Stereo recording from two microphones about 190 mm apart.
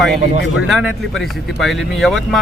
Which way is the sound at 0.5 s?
Centre (ahead or behind).